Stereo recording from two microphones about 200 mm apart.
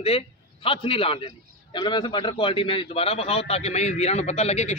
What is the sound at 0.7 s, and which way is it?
A man's voice, 25° left (ahead or behind).